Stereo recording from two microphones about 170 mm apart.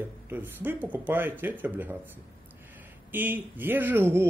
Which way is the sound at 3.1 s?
10° right (ahead or behind).